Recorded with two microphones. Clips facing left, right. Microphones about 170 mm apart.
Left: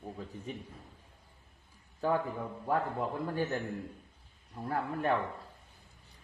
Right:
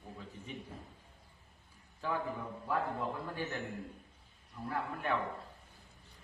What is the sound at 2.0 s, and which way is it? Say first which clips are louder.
Speech: left 7 dB; 45° left (ahead or behind).